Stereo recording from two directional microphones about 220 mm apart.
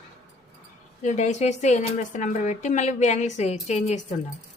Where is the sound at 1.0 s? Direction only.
30° left (ahead or behind).